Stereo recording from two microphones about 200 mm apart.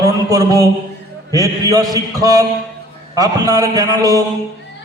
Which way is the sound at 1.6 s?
20° right (ahead or behind).